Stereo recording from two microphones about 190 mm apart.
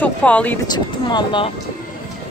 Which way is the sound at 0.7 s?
25° left (ahead or behind).